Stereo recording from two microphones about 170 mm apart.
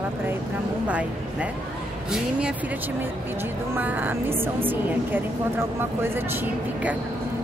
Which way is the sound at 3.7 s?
10° right (ahead or behind).